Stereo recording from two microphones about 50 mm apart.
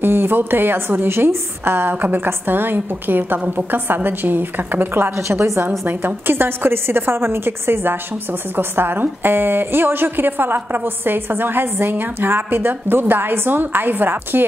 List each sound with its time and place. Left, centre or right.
0.0 s a woman's voice: right
5.3 s a woman's voice: right
5.9 s a woman's voice: right